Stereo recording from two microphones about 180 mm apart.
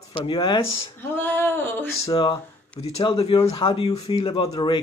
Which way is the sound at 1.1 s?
10° left (ahead or behind).